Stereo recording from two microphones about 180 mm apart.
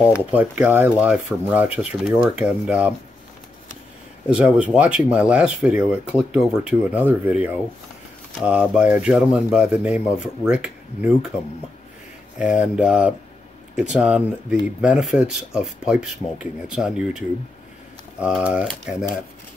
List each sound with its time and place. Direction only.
0.2 s speech: 10° right (ahead or behind)
4.3 s speech: 5° right (ahead or behind)
12.4 s speech: 5° right (ahead or behind)
18.2 s speech: 5° right (ahead or behind)